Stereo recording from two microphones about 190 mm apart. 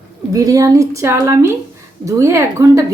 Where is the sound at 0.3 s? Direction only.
20° right (ahead or behind).